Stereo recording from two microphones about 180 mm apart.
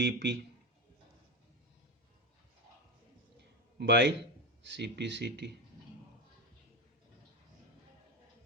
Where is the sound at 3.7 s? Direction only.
70° right (ahead or behind).